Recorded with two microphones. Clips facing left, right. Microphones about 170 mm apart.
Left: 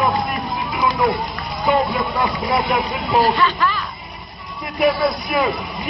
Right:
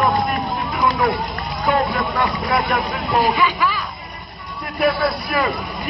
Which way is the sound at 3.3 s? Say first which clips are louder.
Even; 10° right (ahead or behind).